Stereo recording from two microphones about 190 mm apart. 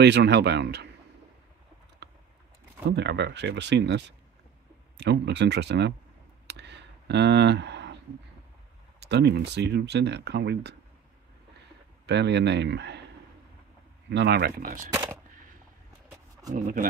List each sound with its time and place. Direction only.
0.0 s speech: 65° right (ahead or behind)
2.0 s vehicle: 60° right (ahead or behind)
2.9 s speech: 65° right (ahead or behind)
6.4 s a sound: 65° right (ahead or behind)
9.0 s speech: 65° right (ahead or behind)
12.1 s speech: 60° right (ahead or behind)
14.1 s speech: 65° right (ahead or behind); by 14.9 s 45° right (ahead or behind)
14.9 s speech: 10° right (ahead or behind)
16.5 s speech: 45° right (ahead or behind)